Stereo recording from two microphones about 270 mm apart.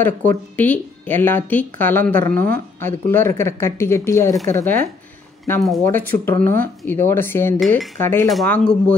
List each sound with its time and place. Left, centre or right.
0.0 s speech: centre
2.2 s speech: right
2.8 s speech: centre
5.4 s cutlery: centre
7.1 s speech: centre
7.8 s cutlery: centre